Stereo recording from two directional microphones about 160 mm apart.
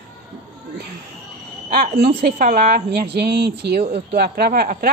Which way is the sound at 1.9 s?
75° right (ahead or behind).